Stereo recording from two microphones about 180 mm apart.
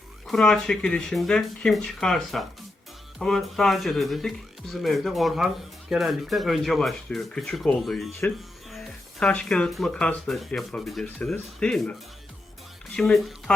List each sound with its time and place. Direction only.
0.3 s speech: 5° left (ahead or behind)